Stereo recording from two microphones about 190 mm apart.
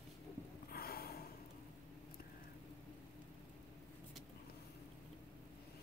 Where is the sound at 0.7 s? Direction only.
50° left (ahead or behind).